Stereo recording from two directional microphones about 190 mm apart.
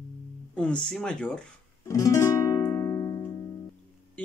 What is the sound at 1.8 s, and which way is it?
Music, 15° left (ahead or behind).